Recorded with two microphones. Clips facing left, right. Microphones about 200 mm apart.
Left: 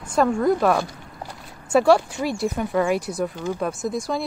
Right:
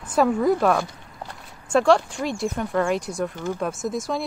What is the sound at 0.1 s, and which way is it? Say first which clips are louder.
Speech: even; 5° right (ahead or behind).